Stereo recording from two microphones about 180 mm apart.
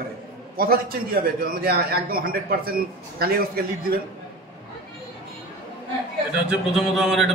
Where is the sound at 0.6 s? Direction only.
55° right (ahead or behind).